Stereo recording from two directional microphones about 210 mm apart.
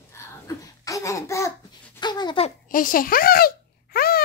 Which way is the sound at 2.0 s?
20° left (ahead or behind).